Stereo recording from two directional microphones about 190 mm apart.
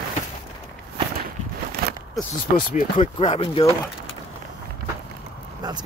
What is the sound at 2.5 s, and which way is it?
Speech, 50° left (ahead or behind).